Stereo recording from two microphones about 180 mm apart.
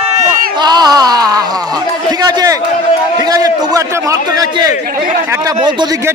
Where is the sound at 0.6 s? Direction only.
25° right (ahead or behind).